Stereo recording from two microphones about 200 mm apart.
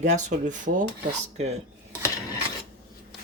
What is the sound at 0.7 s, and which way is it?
Filing, 55° right (ahead or behind).